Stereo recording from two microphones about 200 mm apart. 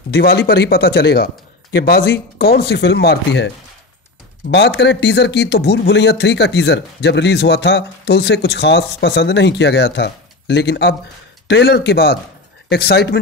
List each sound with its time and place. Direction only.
0.1 s speech: 50° left (ahead or behind)